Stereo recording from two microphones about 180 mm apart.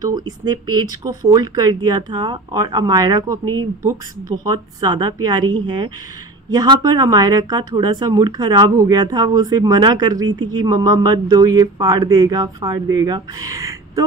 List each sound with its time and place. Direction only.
0.0 s speech: 20° right (ahead or behind)